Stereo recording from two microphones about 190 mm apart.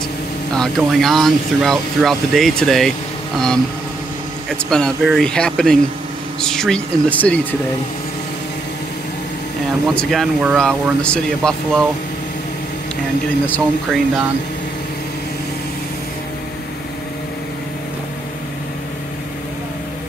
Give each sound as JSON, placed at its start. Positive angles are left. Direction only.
{"t": 0.6, "sound": "speech", "side_deg": 0}
{"t": 4.5, "sound": "speech", "side_deg": 5}
{"t": 9.9, "sound": "speech", "side_deg": 0}
{"t": 13.5, "sound": "speech", "side_deg": 0}